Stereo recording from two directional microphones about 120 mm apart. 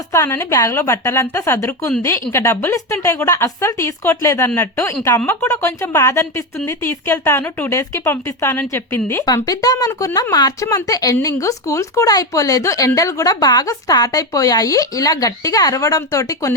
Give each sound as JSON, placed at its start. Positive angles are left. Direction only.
{"t": 0.1, "sound": "speech", "side_deg": 25}
{"t": 9.2, "sound": "speech", "side_deg": 30}